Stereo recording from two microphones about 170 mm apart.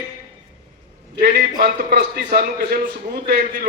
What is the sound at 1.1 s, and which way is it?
A man's voice, 65° right (ahead or behind).